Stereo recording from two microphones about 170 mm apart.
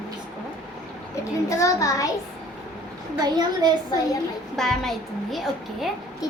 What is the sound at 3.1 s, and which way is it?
Speech, 25° right (ahead or behind).